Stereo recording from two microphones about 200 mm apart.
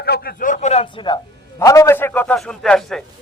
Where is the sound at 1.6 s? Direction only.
15° left (ahead or behind).